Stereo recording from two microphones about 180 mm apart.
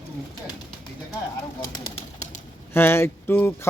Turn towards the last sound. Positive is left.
turn(degrees=10)  # may be behind; listen again after turning